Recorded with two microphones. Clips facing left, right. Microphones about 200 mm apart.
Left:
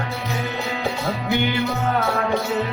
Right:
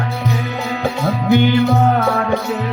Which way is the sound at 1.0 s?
55° right (ahead or behind).